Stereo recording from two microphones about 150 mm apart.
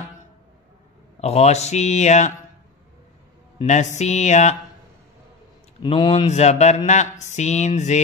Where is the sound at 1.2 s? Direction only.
45° left (ahead or behind).